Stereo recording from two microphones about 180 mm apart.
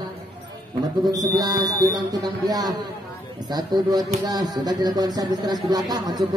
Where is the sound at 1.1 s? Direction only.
20° right (ahead or behind).